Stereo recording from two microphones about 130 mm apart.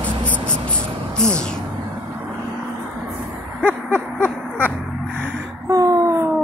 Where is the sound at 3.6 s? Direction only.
15° right (ahead or behind).